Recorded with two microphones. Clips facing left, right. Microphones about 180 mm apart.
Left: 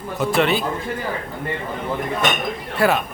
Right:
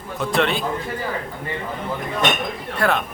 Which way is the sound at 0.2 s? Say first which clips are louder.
Left 2 dB; 5° left (ahead or behind).